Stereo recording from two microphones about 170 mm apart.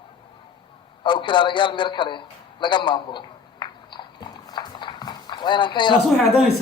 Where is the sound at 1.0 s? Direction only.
30° left (ahead or behind).